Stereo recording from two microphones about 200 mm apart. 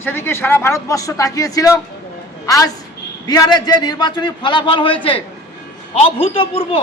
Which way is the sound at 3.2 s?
20° left (ahead or behind).